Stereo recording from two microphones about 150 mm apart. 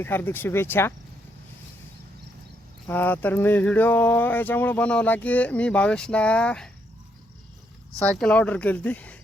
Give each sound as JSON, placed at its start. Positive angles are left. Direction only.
{"t": 0.0, "sound": "speech", "side_deg": 15}
{"t": 2.8, "sound": "speech", "side_deg": 15}
{"t": 8.1, "sound": "speech", "side_deg": 5}